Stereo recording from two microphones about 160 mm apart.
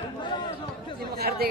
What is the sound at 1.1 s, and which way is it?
Chatter, 80° right.